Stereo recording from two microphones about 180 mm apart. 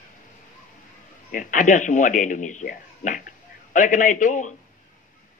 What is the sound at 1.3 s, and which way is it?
Speech, 45° left (ahead or behind).